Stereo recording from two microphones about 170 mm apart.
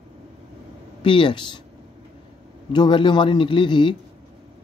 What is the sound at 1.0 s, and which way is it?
Speech, 30° left (ahead or behind).